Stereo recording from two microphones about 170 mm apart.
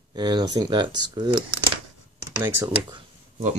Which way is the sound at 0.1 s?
25° right (ahead or behind).